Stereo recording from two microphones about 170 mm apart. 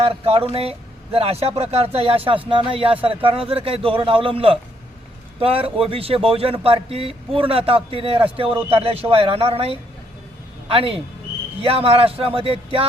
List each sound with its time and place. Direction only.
0.0 s speech: 35° right (ahead or behind)